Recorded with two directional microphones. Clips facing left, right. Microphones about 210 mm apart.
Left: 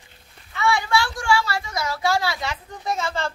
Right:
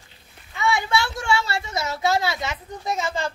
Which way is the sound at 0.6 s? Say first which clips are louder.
Left 1 dB; 20° right (ahead or behind).